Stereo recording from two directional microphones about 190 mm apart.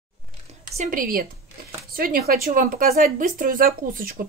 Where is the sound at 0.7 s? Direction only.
45° right (ahead or behind).